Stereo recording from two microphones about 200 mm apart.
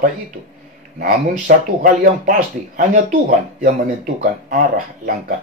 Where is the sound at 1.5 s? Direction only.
45° right (ahead or behind).